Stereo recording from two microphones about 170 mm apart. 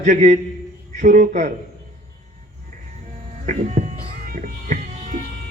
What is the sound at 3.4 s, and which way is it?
Speech, 45° right (ahead or behind).